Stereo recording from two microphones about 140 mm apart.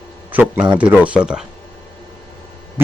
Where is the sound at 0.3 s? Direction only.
10° right (ahead or behind).